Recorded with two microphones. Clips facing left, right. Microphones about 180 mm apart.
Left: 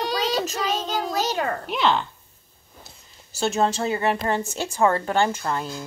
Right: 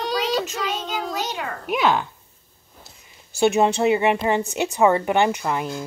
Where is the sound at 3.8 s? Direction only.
20° right (ahead or behind).